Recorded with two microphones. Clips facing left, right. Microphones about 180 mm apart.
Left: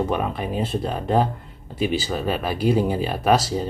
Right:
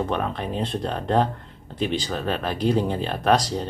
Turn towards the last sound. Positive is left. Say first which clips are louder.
# left 1 dB
turn(degrees=5)  # may be behind; listen again after turning